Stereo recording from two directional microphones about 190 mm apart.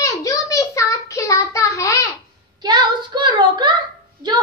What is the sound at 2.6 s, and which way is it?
Child singing, 25° right (ahead or behind).